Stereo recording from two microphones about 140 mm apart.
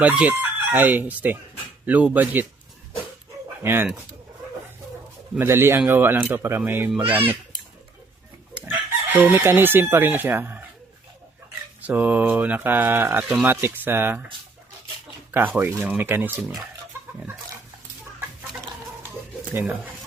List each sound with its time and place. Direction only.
0.1 s speech: 10° right (ahead or behind)
3.6 s speech: 15° right (ahead or behind)
5.4 s speech: 15° right (ahead or behind)
8.6 s chicken: 15° right (ahead or behind)
11.8 s speech: 10° right (ahead or behind)
15.5 s speech: 15° right (ahead or behind)
16.4 s speech: centre (ahead or behind)
19.5 s speech: 10° right (ahead or behind)